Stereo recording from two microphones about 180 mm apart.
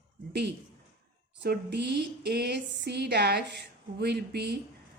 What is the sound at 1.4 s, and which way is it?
A woman's voice, 70° right (ahead or behind).